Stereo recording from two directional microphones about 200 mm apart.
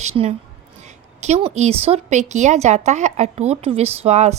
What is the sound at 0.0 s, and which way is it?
A woman's voice, 35° right (ahead or behind).